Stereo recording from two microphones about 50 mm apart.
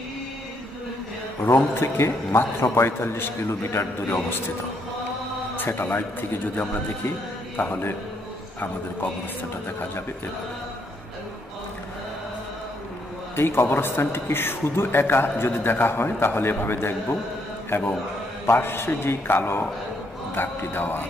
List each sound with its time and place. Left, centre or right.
1.5 s a man's voice: left
5.6 s a man's voice: left
9.7 s a man's voice: left
13.4 s a man's voice: left